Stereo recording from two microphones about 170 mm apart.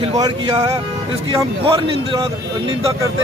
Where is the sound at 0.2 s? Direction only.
20° right (ahead or behind).